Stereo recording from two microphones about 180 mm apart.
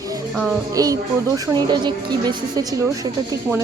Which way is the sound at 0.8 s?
20° right (ahead or behind).